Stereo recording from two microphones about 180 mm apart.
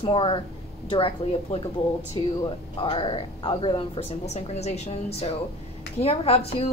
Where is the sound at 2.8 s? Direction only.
30° left (ahead or behind).